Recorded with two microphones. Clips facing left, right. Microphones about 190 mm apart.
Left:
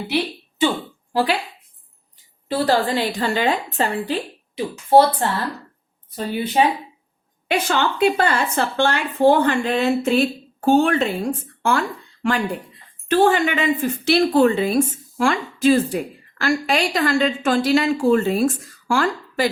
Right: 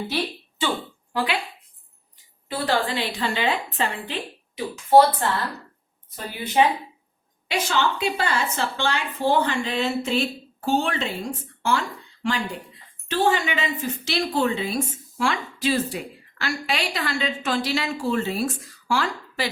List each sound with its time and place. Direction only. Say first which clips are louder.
1.1 s speech: left 5 dB; 35° left (ahead or behind)
2.5 s a woman's voice: left 5 dB; 35° left (ahead or behind)
6.1 s a woman's voice: left 2 dB; 30° left (ahead or behind)
7.4 s a woman's voice: left 3 dB; 55° left (ahead or behind)